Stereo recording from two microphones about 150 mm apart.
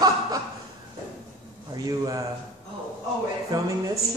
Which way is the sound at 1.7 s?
25° right (ahead or behind).